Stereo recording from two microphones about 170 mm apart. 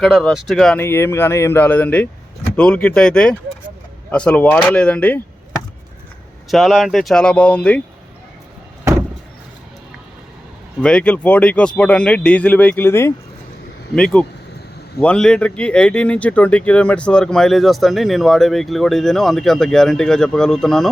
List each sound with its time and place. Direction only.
0.0 s speech: centre (ahead or behind)
0.8 s speech: 15° left (ahead or behind)
6.5 s speech: centre (ahead or behind)
8.8 s door: 15° right (ahead or behind)
10.8 s speech: 5° left (ahead or behind)